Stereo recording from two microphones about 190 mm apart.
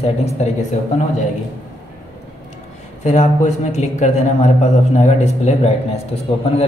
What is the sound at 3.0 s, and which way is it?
Speech, 40° left (ahead or behind).